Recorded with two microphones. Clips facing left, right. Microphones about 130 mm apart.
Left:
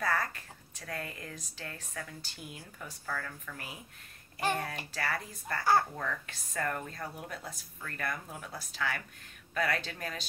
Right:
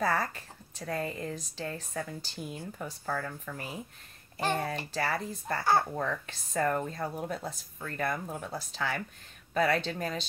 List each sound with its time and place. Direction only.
0.0 s a woman's voice: 25° right (ahead or behind)